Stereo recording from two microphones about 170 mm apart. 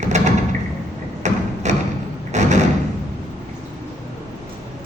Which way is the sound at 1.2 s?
45° right (ahead or behind).